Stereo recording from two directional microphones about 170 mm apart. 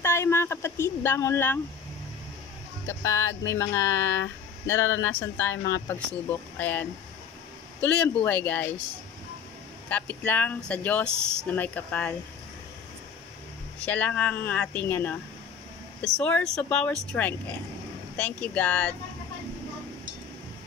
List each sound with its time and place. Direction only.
0.0 s speech: 15° left (ahead or behind)
2.9 s speech: 15° left (ahead or behind)
9.8 s speech: 10° left (ahead or behind)
13.7 s speech: 10° left (ahead or behind)